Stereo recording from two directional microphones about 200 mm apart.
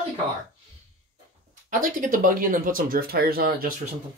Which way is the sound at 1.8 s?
40° right (ahead or behind).